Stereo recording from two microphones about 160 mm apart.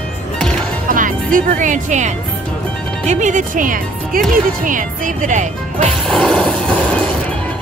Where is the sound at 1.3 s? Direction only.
55° right (ahead or behind).